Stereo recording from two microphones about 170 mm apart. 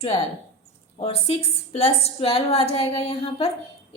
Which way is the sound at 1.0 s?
35° left (ahead or behind).